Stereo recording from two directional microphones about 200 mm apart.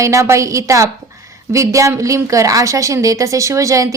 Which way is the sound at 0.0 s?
15° right (ahead or behind).